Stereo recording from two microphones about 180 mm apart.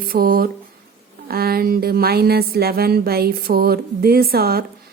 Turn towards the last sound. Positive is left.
turn(degrees=-60)  # may be behind; listen again after turning